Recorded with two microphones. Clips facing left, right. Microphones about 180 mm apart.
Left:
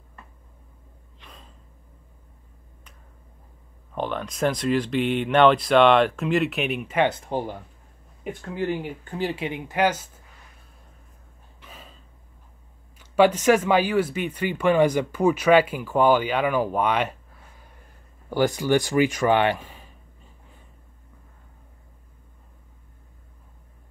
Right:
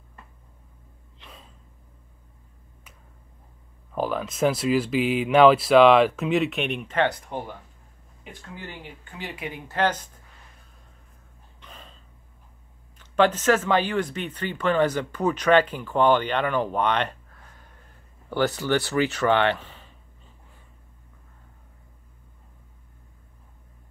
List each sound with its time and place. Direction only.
1.2 s gasp: centre (ahead or behind)
3.9 s speech: 5° right (ahead or behind)
7.1 s speech: 30° left (ahead or behind)
8.2 s speech: 50° left (ahead or behind)
9.0 s speech: 35° left (ahead or behind)
9.7 s speech: 10° left (ahead or behind)
11.6 s a sound: 5° left (ahead or behind)
13.0 s speech: 10° left (ahead or behind)